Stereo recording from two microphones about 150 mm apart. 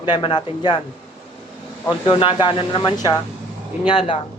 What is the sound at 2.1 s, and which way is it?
Speech, 35° left (ahead or behind).